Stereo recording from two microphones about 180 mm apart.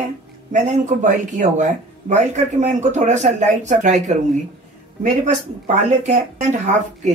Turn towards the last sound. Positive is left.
turn(degrees=-40)  # may be behind; listen again after turning